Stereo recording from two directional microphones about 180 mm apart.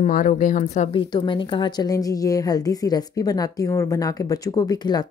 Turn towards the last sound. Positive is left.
turn(degrees=20)  # may be behind; listen again after turning